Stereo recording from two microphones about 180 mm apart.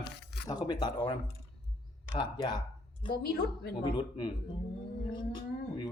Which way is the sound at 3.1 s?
60° left (ahead or behind).